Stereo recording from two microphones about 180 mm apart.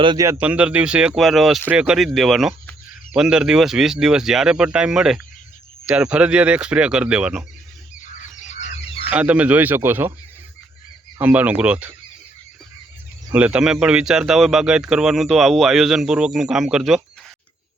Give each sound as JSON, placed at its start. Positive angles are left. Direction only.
{"t": 0.0, "sound": "speech", "side_deg": -25}
{"t": 0.3, "sound": "speech", "side_deg": -10}
{"t": 8.0, "sound": "goose", "side_deg": 45}
{"t": 9.0, "sound": "speech", "side_deg": -5}
{"t": 11.2, "sound": "speech", "side_deg": -10}
{"t": 13.3, "sound": "speech", "side_deg": -5}